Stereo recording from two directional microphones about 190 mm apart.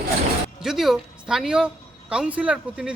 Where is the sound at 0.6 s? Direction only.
Centre (ahead or behind).